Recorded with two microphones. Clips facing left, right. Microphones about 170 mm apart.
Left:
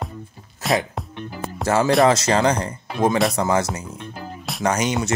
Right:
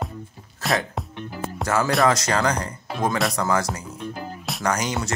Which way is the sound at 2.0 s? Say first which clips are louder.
Left 4 dB; 25° left (ahead or behind).